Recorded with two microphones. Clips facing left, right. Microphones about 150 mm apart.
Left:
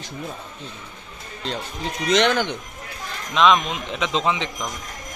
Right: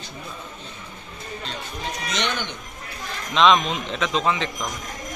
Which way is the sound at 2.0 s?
90° left.